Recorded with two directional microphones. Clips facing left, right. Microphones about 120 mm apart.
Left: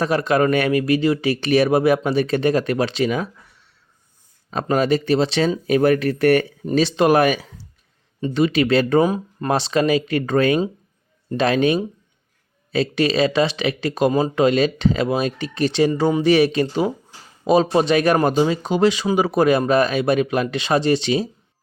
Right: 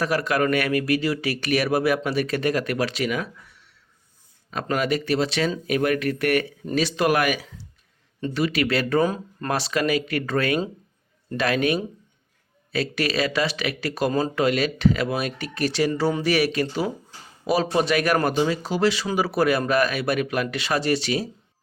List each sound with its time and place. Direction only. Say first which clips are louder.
0.0 s speech: left 4 dB; 25° left (ahead or behind)
4.5 s speech: left 5 dB; 30° left (ahead or behind)
9.0 s speech: left 4 dB; 10° left (ahead or behind)
9.5 s speech: left 5 dB; 25° left (ahead or behind)